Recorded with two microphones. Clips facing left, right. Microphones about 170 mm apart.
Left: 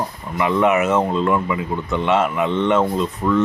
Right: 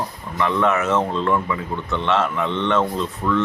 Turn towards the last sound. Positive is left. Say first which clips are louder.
# left 3 dB
turn(degrees=15)  # may be behind; listen again after turning